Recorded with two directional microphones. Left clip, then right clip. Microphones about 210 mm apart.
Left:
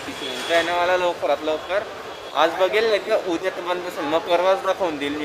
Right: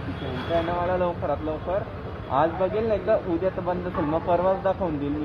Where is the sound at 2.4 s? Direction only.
15° left (ahead or behind).